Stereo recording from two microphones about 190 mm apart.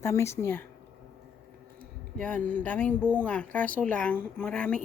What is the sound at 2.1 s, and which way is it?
Speech, 5° left (ahead or behind).